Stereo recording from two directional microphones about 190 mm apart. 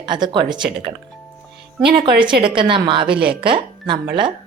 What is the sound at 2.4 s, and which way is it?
A woman's voice, 25° right (ahead or behind).